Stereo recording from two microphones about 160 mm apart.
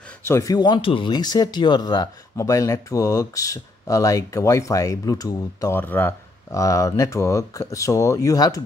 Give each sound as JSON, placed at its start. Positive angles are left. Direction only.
{"t": 0.3, "sound": "speech", "side_deg": 20}